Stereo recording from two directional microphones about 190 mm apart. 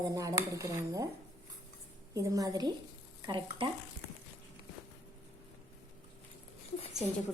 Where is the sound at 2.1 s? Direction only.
20° right (ahead or behind).